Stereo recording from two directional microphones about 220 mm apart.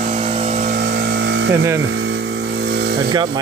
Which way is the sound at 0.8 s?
45° right (ahead or behind).